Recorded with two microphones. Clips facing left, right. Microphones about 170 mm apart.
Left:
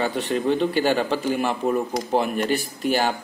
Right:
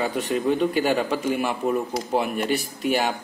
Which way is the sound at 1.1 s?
35° left (ahead or behind).